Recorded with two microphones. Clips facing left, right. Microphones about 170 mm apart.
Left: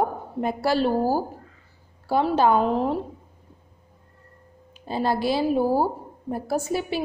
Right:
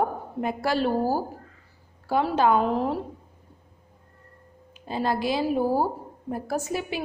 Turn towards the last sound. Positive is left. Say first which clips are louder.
# left 3 dB
turn(degrees=30)  # may be behind; listen again after turning